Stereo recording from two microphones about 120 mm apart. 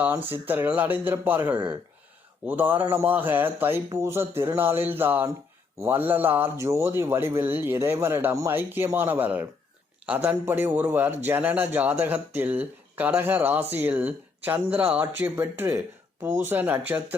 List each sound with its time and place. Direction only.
0.0 s a man's voice: 15° right (ahead or behind)